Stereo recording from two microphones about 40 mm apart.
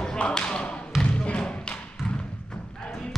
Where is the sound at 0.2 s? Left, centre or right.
Left.